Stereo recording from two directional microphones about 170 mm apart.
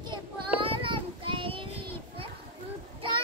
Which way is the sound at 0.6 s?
30° right (ahead or behind).